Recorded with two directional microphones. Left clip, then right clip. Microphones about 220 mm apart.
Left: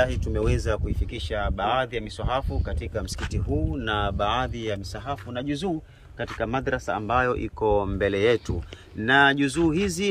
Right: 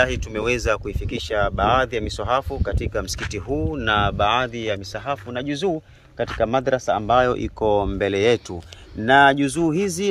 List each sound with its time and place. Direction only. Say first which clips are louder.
0.0 s speech: right 4 dB; 10° right (ahead or behind)
6.1 s speech: right 7 dB; 25° right (ahead or behind)